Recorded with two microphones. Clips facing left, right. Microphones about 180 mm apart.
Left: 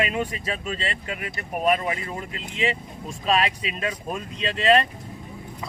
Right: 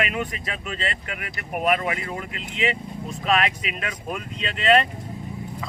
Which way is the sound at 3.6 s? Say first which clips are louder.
Left 2 dB; 30° left (ahead or behind).